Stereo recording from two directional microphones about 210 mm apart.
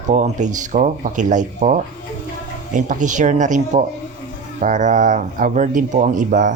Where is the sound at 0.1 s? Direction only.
35° right (ahead or behind).